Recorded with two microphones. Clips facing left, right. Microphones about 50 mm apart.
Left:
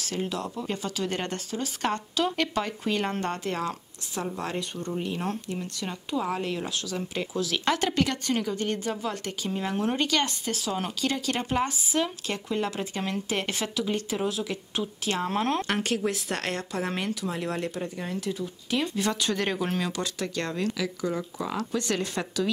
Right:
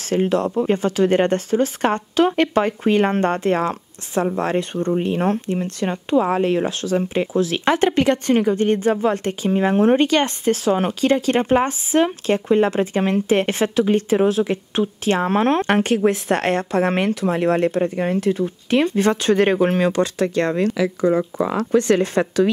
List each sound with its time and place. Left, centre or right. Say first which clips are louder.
0.0 s speech: right 12 dB; right